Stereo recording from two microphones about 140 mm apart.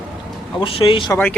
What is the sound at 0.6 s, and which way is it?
Speech, 40° left (ahead or behind).